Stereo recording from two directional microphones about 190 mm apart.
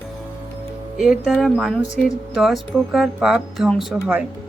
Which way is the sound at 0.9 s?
Centre (ahead or behind).